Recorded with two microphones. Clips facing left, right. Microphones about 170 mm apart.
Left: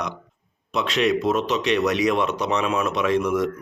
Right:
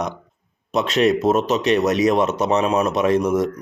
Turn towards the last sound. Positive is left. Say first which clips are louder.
# right 3 dB
turn(degrees=-45)  # may be behind; listen again after turning